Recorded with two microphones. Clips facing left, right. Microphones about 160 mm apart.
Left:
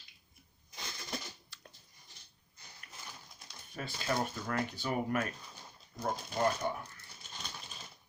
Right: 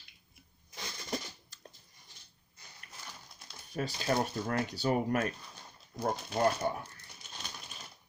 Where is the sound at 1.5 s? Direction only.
45° right (ahead or behind).